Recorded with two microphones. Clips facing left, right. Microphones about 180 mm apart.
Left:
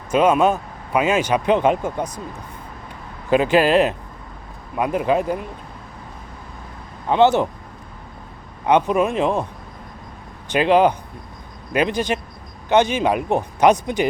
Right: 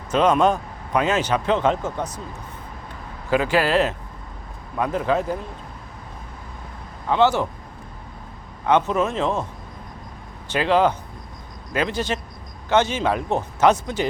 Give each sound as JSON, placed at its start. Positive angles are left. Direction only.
{"t": 0.1, "sound": "speech", "side_deg": 10}
{"t": 3.2, "sound": "speech", "side_deg": 20}
{"t": 7.1, "sound": "speech", "side_deg": 20}
{"t": 8.6, "sound": "speech", "side_deg": 15}
{"t": 10.5, "sound": "speech", "side_deg": 15}